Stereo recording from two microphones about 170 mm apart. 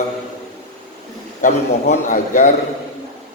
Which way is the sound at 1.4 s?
50° left (ahead or behind).